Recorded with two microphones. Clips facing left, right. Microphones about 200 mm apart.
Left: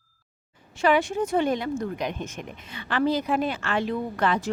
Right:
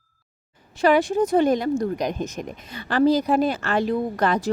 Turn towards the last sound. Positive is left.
turn(degrees=-40)  # may be behind; listen again after turning